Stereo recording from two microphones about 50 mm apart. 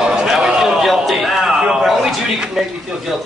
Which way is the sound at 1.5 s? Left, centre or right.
Centre.